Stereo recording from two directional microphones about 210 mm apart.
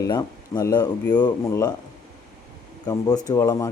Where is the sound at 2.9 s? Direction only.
15° left (ahead or behind).